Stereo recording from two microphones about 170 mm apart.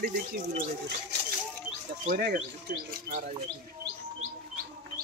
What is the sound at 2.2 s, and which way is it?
Speech, 70° right (ahead or behind).